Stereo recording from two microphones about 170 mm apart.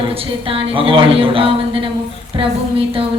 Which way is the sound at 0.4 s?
30° right (ahead or behind).